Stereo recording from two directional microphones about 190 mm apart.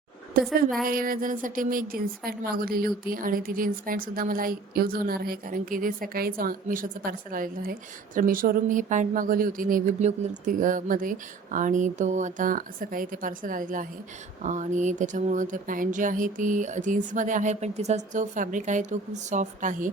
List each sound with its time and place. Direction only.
0.4 s speech: 50° right (ahead or behind)